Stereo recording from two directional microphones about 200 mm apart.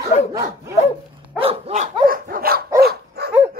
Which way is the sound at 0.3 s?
15° right (ahead or behind).